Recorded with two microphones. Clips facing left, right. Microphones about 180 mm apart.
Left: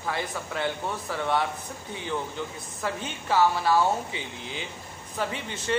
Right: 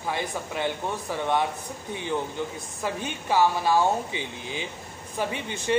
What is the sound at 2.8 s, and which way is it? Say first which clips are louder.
Speech: right 1 dB; 15° right (ahead or behind).